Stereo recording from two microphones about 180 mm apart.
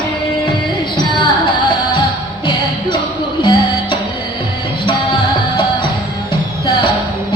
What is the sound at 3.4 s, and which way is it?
Music, 25° left (ahead or behind).